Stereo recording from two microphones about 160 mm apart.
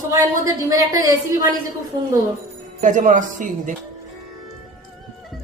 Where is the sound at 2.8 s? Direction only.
50° right (ahead or behind).